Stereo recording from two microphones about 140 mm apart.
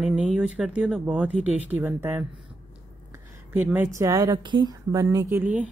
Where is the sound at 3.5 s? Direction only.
15° right (ahead or behind).